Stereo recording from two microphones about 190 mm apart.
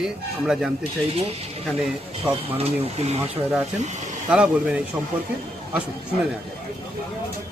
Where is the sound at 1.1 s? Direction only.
30° right (ahead or behind).